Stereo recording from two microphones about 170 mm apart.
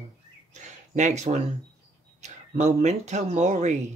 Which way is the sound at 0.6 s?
45° right (ahead or behind).